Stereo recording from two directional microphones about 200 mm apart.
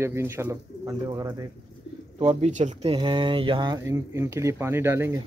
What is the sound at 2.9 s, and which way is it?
Speech, 25° right (ahead or behind).